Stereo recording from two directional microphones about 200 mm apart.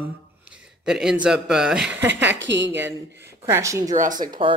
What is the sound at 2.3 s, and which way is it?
Speech, 60° right (ahead or behind).